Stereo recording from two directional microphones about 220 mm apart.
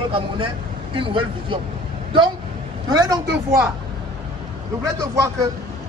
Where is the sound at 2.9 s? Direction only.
15° right (ahead or behind).